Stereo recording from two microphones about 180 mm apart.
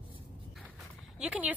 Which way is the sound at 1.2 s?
5° right (ahead or behind).